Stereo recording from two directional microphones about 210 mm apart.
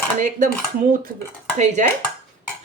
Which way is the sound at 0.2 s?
35° right (ahead or behind).